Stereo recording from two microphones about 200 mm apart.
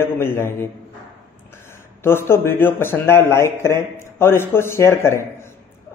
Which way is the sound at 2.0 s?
10° left (ahead or behind).